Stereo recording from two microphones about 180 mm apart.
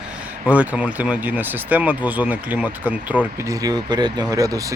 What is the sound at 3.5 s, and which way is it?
Speech, 20° right (ahead or behind).